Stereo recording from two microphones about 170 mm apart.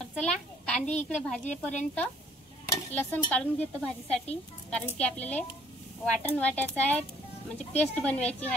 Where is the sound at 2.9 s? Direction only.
10° left (ahead or behind).